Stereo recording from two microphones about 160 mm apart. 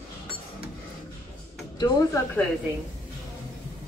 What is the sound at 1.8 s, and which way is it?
Speech, 15° left (ahead or behind).